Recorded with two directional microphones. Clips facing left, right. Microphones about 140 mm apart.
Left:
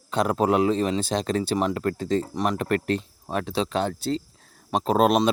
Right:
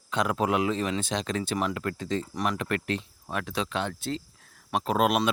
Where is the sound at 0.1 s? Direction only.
35° left (ahead or behind).